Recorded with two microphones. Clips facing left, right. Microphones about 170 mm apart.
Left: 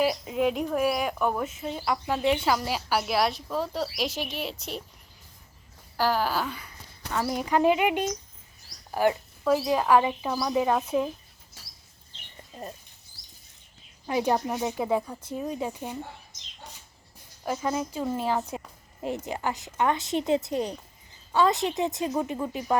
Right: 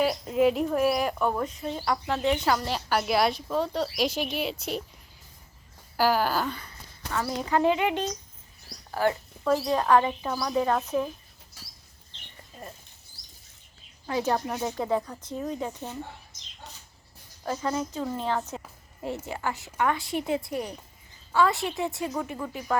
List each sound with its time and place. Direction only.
0.0 s speech: 5° left (ahead or behind)
6.0 s a woman's voice: centre (ahead or behind); by 9.1 s 15° left (ahead or behind)
9.4 s speech: 5° left (ahead or behind)
12.5 s rodents: 20° left (ahead or behind)
14.1 s speech: 15° left (ahead or behind)
17.4 s a woman's voice: 10° left (ahead or behind)